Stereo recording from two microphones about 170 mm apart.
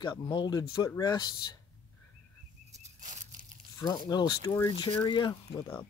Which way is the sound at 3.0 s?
50° right (ahead or behind).